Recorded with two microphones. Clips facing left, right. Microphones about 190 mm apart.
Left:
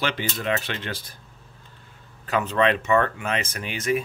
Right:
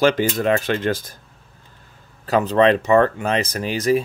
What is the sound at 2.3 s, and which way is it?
Speech, 35° right (ahead or behind).